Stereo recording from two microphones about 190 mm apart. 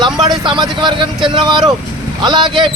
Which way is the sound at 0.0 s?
25° right (ahead or behind).